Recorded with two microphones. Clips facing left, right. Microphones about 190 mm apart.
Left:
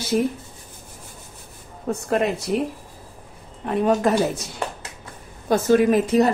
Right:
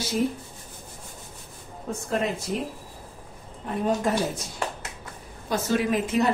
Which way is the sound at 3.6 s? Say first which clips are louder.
Left 6 dB; 70° left (ahead or behind).